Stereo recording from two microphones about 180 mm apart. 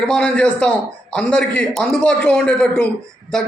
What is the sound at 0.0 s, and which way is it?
A man's voice, 5° left (ahead or behind).